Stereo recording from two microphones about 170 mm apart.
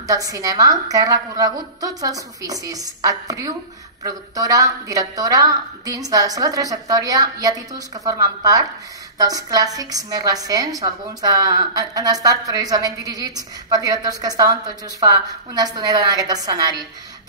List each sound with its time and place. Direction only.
0.0 s a woman's voice: 20° right (ahead or behind)